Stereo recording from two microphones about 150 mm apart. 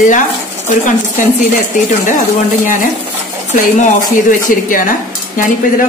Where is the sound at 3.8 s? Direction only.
60° left (ahead or behind).